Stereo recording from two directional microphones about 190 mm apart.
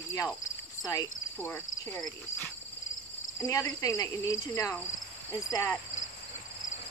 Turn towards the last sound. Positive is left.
turn(degrees=15)  # may be behind; listen again after turning